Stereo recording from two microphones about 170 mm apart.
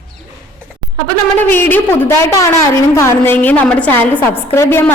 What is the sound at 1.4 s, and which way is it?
A woman's voice, 10° left (ahead or behind).